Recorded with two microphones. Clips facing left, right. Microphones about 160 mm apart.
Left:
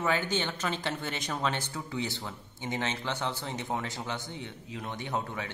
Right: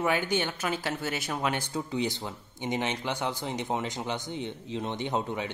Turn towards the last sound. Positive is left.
turn(degrees=-20)  # may be behind; listen again after turning